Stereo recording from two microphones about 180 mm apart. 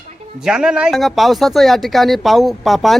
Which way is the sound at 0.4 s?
5° right (ahead or behind).